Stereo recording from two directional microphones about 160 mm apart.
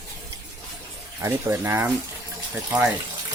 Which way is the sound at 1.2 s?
15° right (ahead or behind).